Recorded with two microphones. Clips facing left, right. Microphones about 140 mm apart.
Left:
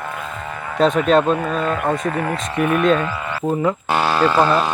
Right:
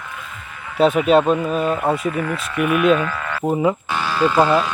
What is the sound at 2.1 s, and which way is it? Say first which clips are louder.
Speech: left 1 dB; 45° left (ahead or behind).